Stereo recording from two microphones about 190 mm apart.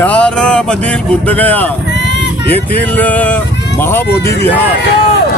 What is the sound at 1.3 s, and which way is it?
Speech, 10° left (ahead or behind).